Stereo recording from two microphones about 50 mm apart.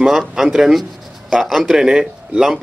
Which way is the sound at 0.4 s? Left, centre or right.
Centre.